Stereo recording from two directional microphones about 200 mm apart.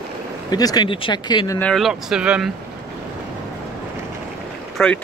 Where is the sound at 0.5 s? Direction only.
20° left (ahead or behind).